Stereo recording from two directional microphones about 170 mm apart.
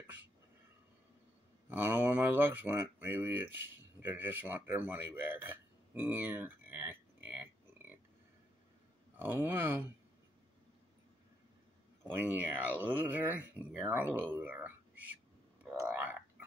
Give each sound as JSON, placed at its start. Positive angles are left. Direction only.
{"t": 1.7, "sound": "speech", "side_deg": -10}
{"t": 9.1, "sound": "speech", "side_deg": -10}
{"t": 12.1, "sound": "speech", "side_deg": -10}
{"t": 15.6, "sound": "a sound", "side_deg": -15}